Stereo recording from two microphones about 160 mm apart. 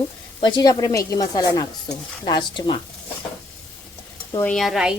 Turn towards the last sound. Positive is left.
turn(degrees=0)  # may be behind; listen again after turning